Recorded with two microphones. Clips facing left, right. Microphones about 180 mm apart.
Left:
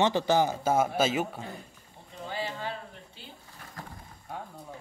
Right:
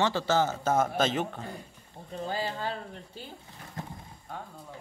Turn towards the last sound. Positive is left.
turn(degrees=-20)  # may be behind; listen again after turning